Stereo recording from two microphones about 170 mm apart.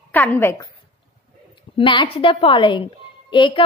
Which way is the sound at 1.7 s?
30° left (ahead or behind).